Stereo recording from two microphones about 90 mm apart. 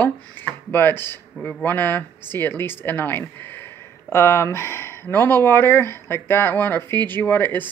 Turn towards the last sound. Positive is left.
turn(degrees=20)  # may be behind; listen again after turning